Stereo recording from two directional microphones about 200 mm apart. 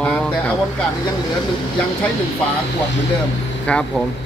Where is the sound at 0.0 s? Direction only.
5° left (ahead or behind).